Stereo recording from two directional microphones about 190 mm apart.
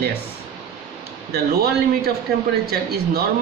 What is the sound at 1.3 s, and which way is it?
A woman's voice, 55° right (ahead or behind).